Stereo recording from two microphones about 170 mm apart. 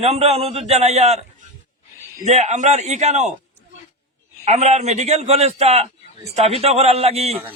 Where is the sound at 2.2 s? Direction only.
40° right (ahead or behind).